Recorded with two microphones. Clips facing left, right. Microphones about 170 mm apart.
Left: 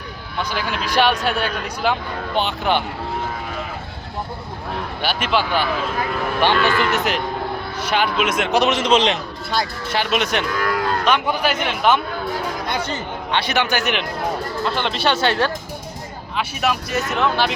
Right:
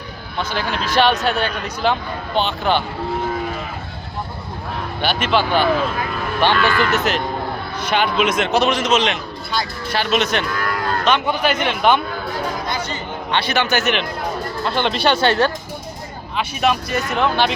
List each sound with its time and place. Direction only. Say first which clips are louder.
0.5 s a man's voice: right 2 dB; 10° left (ahead or behind)
5.0 s a man's voice: right 3 dB; 10° left (ahead or behind)
8.8 s a man's voice: left 1 dB; 30° left (ahead or behind)
10.0 s a man's voice: right 2 dB; 15° left (ahead or behind)
13.3 s a man's voice: right 1 dB; 15° left (ahead or behind)
14.8 s speech: right 4 dB; centre (ahead or behind)